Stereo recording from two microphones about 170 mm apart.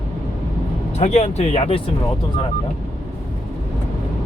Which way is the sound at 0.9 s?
40° left (ahead or behind).